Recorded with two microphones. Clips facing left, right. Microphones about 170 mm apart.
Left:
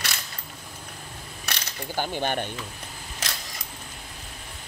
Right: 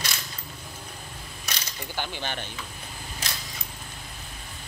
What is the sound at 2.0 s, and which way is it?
Speech, 50° left (ahead or behind).